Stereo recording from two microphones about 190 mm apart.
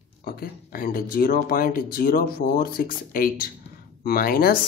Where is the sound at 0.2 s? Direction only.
50° left (ahead or behind).